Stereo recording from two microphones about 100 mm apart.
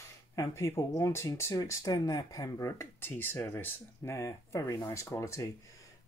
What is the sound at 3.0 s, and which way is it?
Speech, 20° left (ahead or behind).